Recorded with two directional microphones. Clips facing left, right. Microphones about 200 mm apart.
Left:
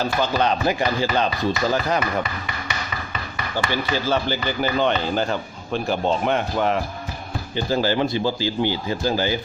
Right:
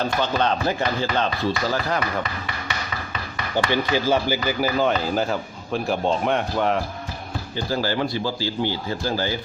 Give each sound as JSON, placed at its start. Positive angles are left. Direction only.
{"t": 0.0, "sound": "speech", "side_deg": 5}
{"t": 3.7, "sound": "a man's voice", "side_deg": -15}
{"t": 7.5, "sound": "speech", "side_deg": 20}